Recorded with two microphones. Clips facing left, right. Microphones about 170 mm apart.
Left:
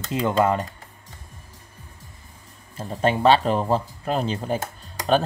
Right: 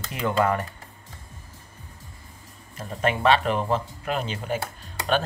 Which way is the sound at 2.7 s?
30° left (ahead or behind).